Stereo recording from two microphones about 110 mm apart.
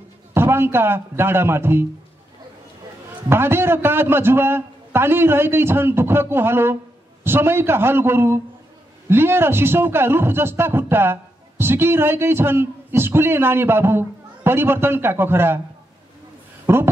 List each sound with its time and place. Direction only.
0.3 s speech: 20° right (ahead or behind)
3.3 s speech: 20° right (ahead or behind)
16.6 s a sound: 20° right (ahead or behind)